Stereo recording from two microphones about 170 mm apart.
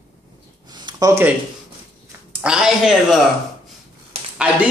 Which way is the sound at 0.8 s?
20° right (ahead or behind).